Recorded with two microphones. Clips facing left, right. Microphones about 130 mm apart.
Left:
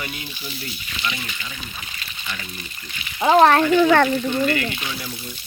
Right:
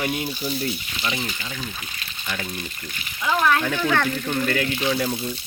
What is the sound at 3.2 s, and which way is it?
Speech, 50° left (ahead or behind).